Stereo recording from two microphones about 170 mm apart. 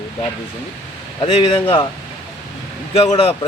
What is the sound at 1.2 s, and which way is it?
Speech, 30° left (ahead or behind).